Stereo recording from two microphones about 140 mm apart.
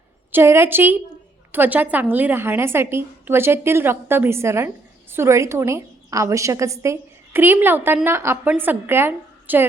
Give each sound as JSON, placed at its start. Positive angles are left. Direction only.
{"t": 0.3, "sound": "a woman's voice", "side_deg": -15}